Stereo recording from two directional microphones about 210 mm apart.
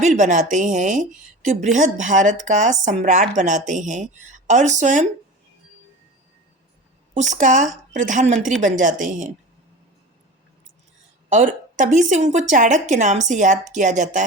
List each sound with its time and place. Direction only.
0.0 s a woman's voice: 35° right (ahead or behind)
7.1 s a woman's voice: 35° right (ahead or behind)
11.3 s a woman's voice: 35° right (ahead or behind)